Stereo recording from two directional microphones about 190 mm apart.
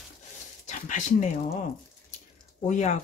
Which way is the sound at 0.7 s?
40° left (ahead or behind).